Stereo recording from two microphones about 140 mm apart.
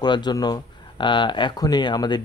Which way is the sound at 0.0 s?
30° left (ahead or behind).